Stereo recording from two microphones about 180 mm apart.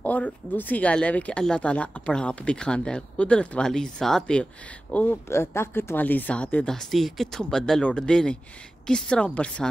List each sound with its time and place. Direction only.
0.0 s speech: 10° left (ahead or behind)